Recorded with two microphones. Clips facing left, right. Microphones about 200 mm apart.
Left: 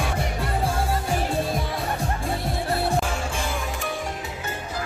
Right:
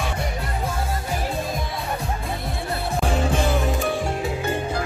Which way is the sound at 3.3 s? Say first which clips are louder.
Right 7 dB; 35° right (ahead or behind).